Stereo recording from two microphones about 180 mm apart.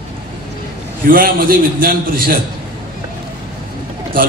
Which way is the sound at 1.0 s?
55° right (ahead or behind).